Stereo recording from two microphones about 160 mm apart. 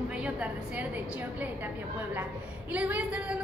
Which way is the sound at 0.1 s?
10° right (ahead or behind).